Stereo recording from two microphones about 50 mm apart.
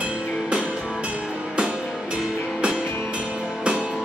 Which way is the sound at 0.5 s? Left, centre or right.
Centre.